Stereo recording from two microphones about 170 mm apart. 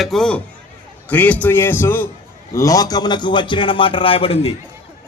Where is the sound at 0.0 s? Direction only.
Centre (ahead or behind); by 4.5 s 35° left (ahead or behind).